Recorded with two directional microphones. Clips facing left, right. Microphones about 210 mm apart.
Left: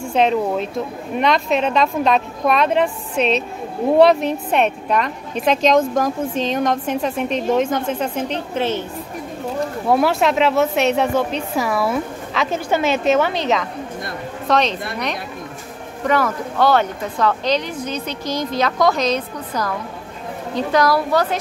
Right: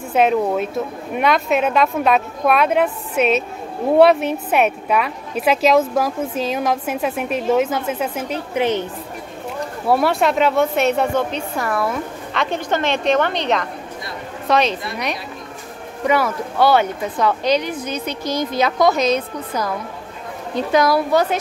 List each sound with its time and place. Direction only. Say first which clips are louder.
0.1 s speech: right 1 dB; 5° right (ahead or behind)
9.8 s speech: even; centre (ahead or behind)
16.1 s speech: even; 5° right (ahead or behind)
20.7 s a woman's voice: right 1 dB; 20° right (ahead or behind)